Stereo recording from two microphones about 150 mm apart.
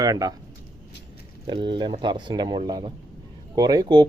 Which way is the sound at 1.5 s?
30° right (ahead or behind).